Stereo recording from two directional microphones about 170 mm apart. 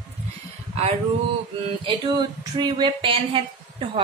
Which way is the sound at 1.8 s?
25° right (ahead or behind).